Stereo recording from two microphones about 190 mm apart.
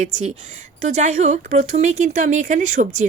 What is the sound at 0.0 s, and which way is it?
A woman's voice, 40° right (ahead or behind).